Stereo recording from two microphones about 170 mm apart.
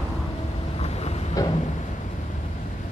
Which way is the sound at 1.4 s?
20° left (ahead or behind).